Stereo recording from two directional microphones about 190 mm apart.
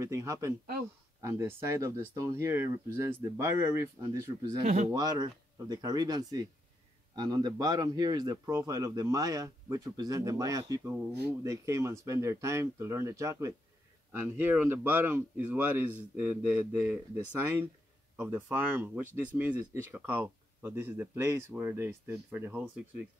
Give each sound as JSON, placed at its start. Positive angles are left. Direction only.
{"t": 0.0, "sound": "speech", "side_deg": -15}